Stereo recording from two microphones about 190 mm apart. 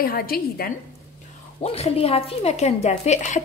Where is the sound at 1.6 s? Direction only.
30° left (ahead or behind).